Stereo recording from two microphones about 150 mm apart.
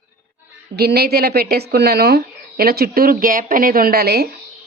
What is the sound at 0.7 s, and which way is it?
Speech, 90° right.